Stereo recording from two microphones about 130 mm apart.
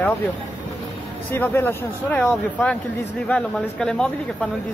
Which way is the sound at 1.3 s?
15° left (ahead or behind).